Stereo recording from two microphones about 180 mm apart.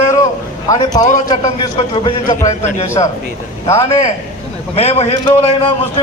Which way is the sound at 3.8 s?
35° left (ahead or behind).